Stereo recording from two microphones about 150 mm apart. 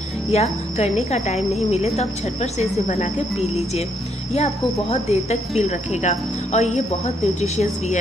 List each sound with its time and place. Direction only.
0.3 s speech: 45° left (ahead or behind)